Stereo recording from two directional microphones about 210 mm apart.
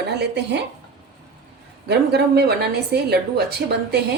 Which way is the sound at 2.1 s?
50° right (ahead or behind).